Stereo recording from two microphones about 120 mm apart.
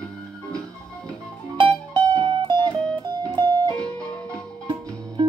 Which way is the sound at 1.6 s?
45° right (ahead or behind).